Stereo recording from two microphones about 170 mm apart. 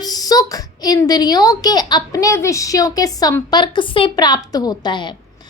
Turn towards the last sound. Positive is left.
turn(degrees=25)  # may be behind; listen again after turning